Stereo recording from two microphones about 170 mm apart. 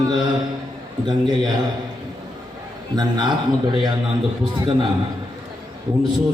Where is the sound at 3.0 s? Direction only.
25° right (ahead or behind).